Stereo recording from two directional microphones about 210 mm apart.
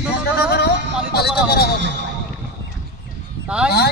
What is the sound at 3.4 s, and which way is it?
Speech, 5° right (ahead or behind).